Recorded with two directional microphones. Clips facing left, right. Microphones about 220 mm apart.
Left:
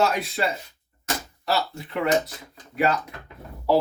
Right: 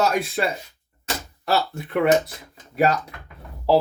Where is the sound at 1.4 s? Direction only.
55° right (ahead or behind).